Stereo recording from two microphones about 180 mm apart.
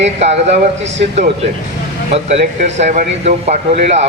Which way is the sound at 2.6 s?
45° right (ahead or behind).